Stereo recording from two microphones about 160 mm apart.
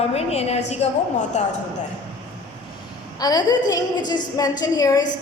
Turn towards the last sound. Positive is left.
turn(degrees=25)  # may be behind; listen again after turning